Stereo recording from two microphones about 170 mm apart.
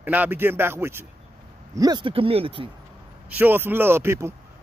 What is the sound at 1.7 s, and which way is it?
Speech, 25° right (ahead or behind).